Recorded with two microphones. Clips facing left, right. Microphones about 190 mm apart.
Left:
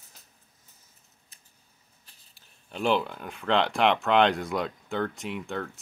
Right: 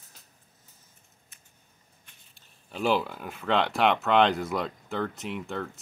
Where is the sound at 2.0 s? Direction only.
35° left (ahead or behind).